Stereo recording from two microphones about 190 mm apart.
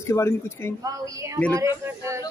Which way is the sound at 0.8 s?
20° right (ahead or behind).